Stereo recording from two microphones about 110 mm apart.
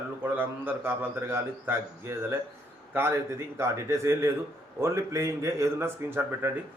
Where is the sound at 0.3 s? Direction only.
15° right (ahead or behind).